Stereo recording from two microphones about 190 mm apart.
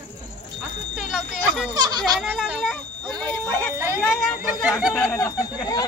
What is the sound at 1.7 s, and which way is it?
Children playing, 20° right (ahead or behind).